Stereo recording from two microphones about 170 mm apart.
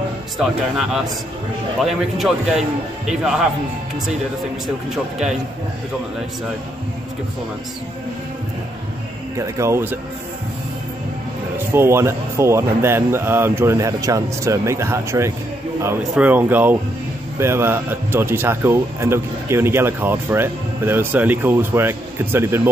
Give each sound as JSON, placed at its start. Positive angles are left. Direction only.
{"t": 0.4, "sound": "speech", "side_deg": 0}
{"t": 9.6, "sound": "speech", "side_deg": -15}
{"t": 11.5, "sound": "speech", "side_deg": -15}